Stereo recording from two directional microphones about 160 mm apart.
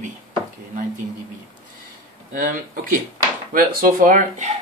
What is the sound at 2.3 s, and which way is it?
Speech, 60° right (ahead or behind).